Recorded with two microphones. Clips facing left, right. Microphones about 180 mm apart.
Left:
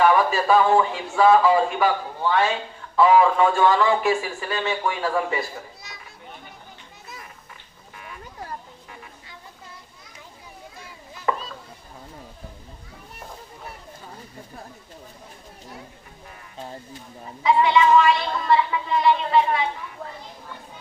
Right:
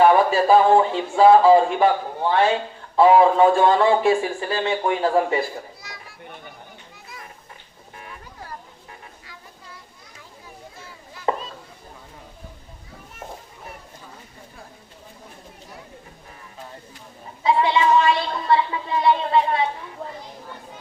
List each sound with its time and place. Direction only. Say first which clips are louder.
0.0 s speech: right 3 dB; 30° right (ahead or behind)
5.8 s children playing: right 2 dB; 20° left (ahead or behind)
11.3 s children playing: right 2 dB; 30° right (ahead or behind)
17.4 s speech: left 1 dB; 30° right (ahead or behind)